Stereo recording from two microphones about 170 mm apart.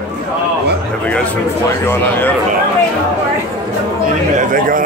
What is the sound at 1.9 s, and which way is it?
Speech, 10° left (ahead or behind).